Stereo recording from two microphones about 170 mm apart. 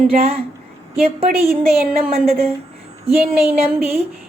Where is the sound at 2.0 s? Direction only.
35° right (ahead or behind).